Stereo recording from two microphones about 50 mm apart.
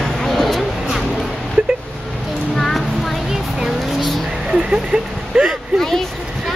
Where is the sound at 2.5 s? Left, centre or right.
Centre.